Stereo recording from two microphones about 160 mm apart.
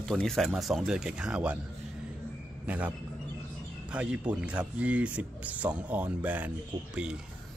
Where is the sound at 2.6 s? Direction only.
10° right (ahead or behind).